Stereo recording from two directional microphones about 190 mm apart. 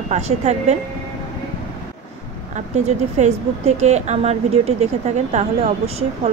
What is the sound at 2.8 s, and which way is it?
Speech, 35° right (ahead or behind).